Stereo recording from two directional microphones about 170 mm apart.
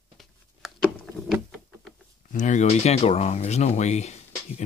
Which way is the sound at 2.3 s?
45° left (ahead or behind).